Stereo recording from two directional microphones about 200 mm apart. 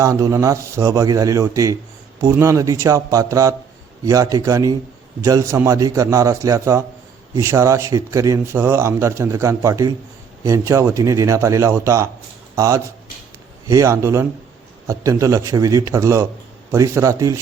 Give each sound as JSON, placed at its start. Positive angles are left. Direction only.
{"t": 0.0, "sound": "speech", "side_deg": -15}